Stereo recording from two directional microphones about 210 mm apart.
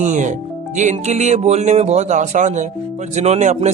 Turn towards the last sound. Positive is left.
turn(degrees=-35)  # may be behind; listen again after turning